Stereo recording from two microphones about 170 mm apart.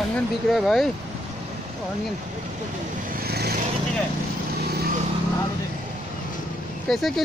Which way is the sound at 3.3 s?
70° right (ahead or behind).